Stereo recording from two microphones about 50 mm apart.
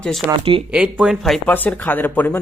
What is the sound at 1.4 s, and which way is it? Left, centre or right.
Speech, left.